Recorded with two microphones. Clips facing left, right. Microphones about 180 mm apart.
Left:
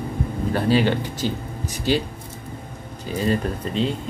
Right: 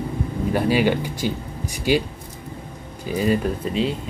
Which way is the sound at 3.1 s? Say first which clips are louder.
Right 2 dB; 10° right (ahead or behind).